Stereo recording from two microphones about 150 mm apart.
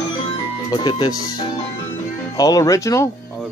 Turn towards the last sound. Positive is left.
turn(degrees=20)  # may be behind; listen again after turning